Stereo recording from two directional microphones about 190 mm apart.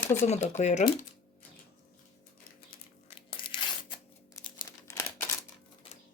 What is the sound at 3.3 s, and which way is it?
Tearing, 25° left (ahead or behind).